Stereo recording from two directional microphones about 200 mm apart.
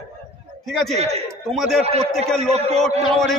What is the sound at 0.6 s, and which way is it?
Speech, centre (ahead or behind).